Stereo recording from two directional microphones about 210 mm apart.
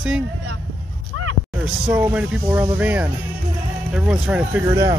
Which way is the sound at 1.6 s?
10° right (ahead or behind).